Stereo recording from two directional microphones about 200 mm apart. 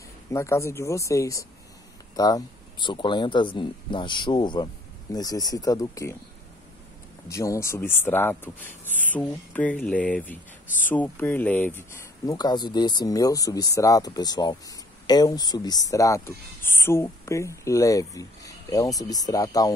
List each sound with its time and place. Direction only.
0.3 s speech: 15° left (ahead or behind)
7.2 s speech: 15° left (ahead or behind)